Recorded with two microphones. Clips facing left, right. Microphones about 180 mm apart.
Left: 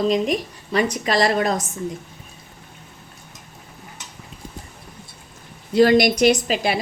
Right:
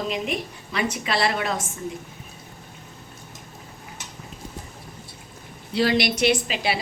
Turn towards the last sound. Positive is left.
turn(degrees=45)  # may be behind; listen again after turning